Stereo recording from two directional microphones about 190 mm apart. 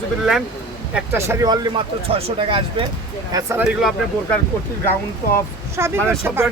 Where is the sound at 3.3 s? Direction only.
15° right (ahead or behind).